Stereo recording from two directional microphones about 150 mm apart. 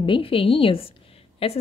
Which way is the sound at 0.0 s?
35° left (ahead or behind).